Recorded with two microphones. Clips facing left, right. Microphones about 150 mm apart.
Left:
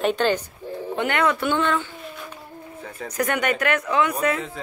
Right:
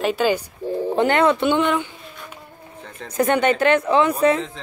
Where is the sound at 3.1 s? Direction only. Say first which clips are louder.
Right 6 dB; 25° right (ahead or behind).